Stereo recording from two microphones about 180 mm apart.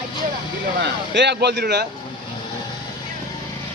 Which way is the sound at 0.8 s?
75° right (ahead or behind).